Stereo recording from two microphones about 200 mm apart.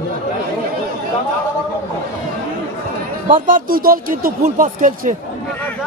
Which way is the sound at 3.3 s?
45° right (ahead or behind).